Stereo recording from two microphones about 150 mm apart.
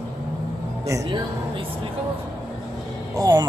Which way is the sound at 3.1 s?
25° right (ahead or behind).